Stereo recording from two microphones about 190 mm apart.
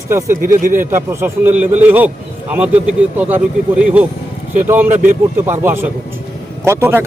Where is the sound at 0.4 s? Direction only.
45° right (ahead or behind).